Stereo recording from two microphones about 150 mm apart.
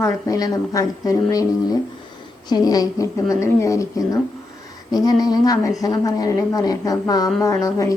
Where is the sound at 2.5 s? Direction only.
25° left (ahead or behind).